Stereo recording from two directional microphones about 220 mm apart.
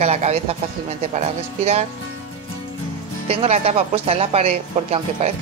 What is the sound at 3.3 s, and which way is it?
Speech, 30° right (ahead or behind).